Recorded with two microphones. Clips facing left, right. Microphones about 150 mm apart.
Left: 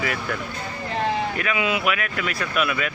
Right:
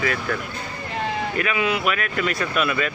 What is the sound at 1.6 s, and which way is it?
Speech, 10° left (ahead or behind).